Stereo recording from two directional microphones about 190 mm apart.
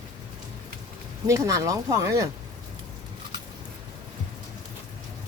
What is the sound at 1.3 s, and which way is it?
Speech, 15° right (ahead or behind).